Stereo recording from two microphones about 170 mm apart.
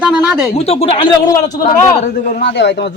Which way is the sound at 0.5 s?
35° left (ahead or behind).